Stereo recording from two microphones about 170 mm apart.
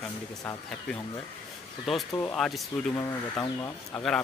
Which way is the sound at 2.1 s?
5° left (ahead or behind).